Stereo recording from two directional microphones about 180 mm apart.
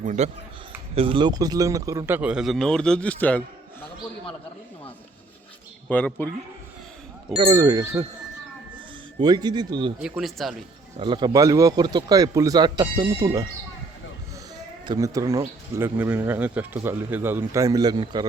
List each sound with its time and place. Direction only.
0.0 s speech: 40° right (ahead or behind)
0.9 s speech: 30° right (ahead or behind); by 3.8 s 10° left (ahead or behind)
5.9 s a man's voice: 5° left (ahead or behind)
7.3 s speech: 25° right (ahead or behind)
9.1 s speech: 20° right (ahead or behind)
10.0 s speech: centre (ahead or behind)
10.9 s speech: 25° right (ahead or behind)
14.8 s speech: 20° right (ahead or behind)